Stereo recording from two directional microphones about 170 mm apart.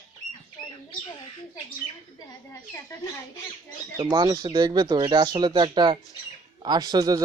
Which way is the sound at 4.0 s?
25° right (ahead or behind).